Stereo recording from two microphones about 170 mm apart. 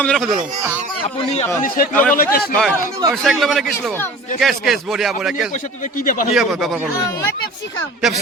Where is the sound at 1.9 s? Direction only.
10° left (ahead or behind).